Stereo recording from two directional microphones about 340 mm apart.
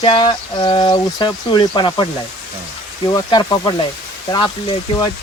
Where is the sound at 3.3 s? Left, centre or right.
Centre.